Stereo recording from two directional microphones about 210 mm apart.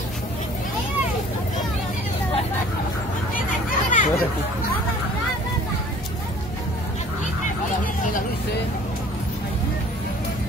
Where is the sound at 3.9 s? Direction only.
40° left (ahead or behind).